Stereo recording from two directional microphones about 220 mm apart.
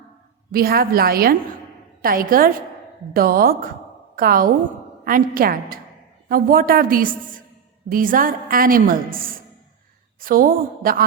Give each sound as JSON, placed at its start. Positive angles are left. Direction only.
{"t": 0.5, "sound": "a woman's voice", "side_deg": -40}